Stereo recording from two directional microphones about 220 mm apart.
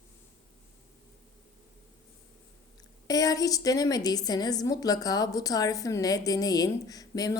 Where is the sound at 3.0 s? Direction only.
15° left (ahead or behind).